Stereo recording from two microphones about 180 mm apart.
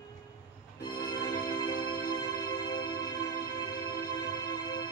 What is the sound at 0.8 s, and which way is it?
Music, 20° left (ahead or behind).